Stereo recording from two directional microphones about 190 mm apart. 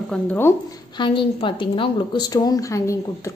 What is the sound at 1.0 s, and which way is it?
A woman's voice, 25° left (ahead or behind).